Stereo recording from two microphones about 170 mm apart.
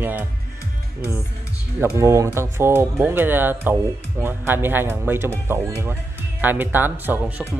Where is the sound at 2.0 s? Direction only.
15° right (ahead or behind).